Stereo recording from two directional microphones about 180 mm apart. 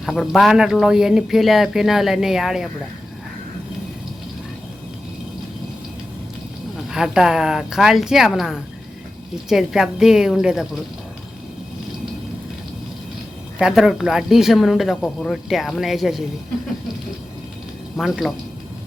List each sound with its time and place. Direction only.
0.0 s speech: centre (ahead or behind)
6.9 s speech: centre (ahead or behind)
13.6 s speech: 5° right (ahead or behind)
17.9 s speech: centre (ahead or behind)